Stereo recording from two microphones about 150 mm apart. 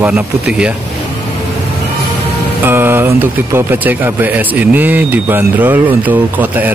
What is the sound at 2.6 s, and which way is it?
Speech, 15° right (ahead or behind).